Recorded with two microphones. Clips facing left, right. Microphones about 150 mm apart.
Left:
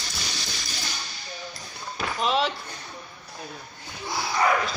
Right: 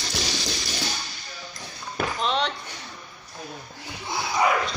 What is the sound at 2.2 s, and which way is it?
Speech, 5° left (ahead or behind).